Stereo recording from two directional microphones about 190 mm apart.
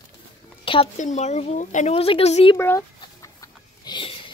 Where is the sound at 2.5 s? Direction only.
10° left (ahead or behind).